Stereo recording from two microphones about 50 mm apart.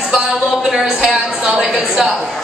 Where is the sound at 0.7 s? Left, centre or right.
Centre.